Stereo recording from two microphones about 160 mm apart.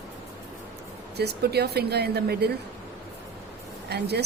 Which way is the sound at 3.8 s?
90° right.